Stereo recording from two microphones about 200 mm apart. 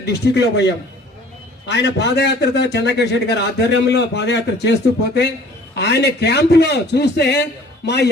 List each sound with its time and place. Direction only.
0.0 s a man's voice: 60° left (ahead or behind)